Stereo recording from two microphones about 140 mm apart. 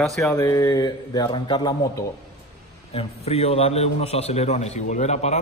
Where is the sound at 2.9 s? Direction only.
45° left (ahead or behind).